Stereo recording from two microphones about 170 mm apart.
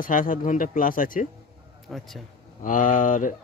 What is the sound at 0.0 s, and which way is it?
A man's voice, 50° left (ahead or behind).